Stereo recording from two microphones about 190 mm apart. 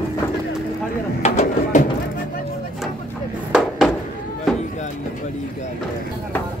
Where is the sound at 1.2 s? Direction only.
40° left (ahead or behind).